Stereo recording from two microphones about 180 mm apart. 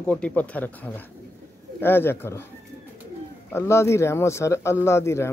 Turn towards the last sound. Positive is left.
turn(degrees=15)  # may be behind; listen again after turning